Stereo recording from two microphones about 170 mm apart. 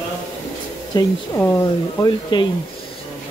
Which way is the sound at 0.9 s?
15° left (ahead or behind).